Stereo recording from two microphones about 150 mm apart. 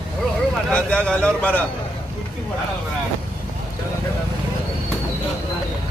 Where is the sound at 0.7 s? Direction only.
5° left (ahead or behind).